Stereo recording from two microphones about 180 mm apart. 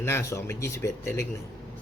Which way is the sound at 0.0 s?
15° left (ahead or behind).